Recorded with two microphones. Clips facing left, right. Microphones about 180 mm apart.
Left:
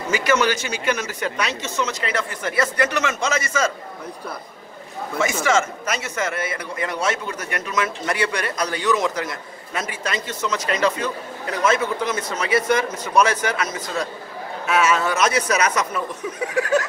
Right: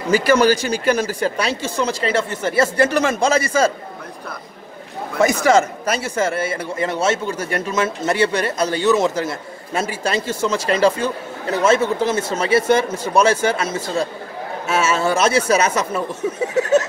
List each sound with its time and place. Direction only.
0.1 s speech: 35° right (ahead or behind)
5.2 s a man's voice: 35° right (ahead or behind)